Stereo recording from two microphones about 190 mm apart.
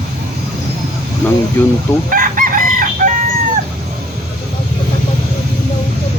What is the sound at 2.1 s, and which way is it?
Chicken, 45° right (ahead or behind).